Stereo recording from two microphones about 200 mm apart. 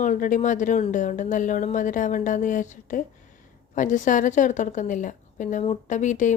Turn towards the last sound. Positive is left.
turn(degrees=40)  # may be behind; listen again after turning